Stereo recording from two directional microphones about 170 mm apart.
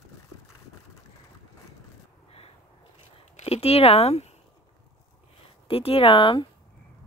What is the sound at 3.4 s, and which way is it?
Speech, 35° left (ahead or behind).